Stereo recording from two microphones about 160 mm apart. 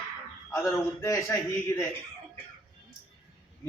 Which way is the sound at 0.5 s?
20° left (ahead or behind).